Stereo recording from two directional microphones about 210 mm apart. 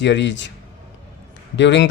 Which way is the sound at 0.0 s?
60° left (ahead or behind).